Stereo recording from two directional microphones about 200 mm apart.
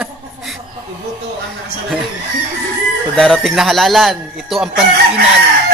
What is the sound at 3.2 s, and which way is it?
Speech, centre (ahead or behind).